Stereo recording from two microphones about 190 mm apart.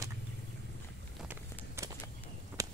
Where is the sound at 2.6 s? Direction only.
20° right (ahead or behind).